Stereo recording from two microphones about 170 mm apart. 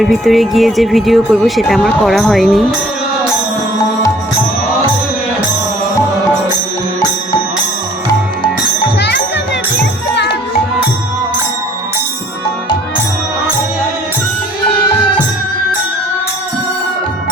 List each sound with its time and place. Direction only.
0.0 s speech: centre (ahead or behind)
9.0 s music: 85° left